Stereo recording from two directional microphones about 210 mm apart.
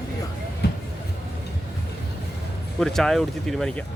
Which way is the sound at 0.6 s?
50° left (ahead or behind).